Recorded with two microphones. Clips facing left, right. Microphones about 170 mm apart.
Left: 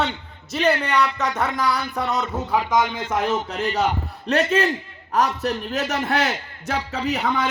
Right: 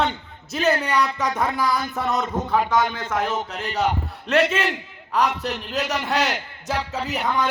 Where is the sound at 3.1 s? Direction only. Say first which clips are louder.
Left 2 dB; 30° left (ahead or behind).